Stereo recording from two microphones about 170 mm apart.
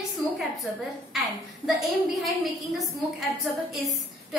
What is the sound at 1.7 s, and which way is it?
A woman's voice, centre (ahead or behind).